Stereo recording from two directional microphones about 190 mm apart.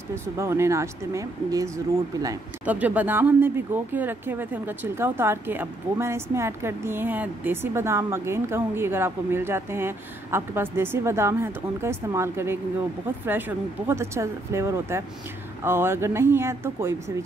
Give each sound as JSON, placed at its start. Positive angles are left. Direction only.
{"t": 0.1, "sound": "speech", "side_deg": -15}